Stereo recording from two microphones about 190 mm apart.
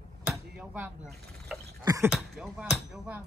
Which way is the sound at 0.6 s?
10° right (ahead or behind).